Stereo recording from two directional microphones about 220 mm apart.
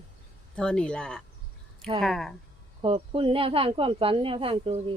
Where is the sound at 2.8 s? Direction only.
25° right (ahead or behind).